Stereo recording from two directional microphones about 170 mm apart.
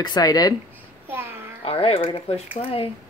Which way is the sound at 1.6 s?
35° left (ahead or behind).